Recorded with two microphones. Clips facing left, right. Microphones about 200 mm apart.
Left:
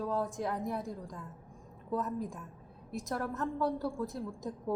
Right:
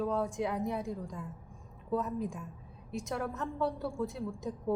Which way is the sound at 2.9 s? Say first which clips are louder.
Even; centre (ahead or behind).